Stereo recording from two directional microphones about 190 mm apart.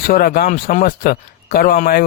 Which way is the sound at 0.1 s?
50° left (ahead or behind).